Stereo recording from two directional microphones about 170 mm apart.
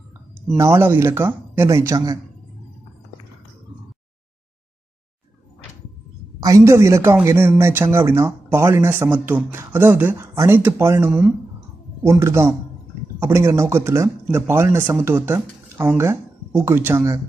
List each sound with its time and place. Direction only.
0.6 s speech: 15° right (ahead or behind)
6.4 s speech: 20° right (ahead or behind)
12.0 s speech: 15° right (ahead or behind)